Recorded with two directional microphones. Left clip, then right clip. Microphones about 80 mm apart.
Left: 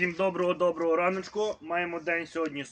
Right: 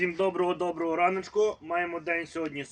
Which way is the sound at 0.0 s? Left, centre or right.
Left.